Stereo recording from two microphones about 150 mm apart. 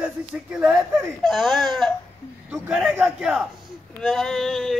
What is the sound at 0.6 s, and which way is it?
Speech, 10° right (ahead or behind).